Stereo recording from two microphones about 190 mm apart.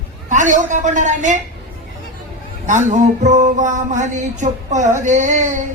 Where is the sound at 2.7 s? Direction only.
40° right (ahead or behind).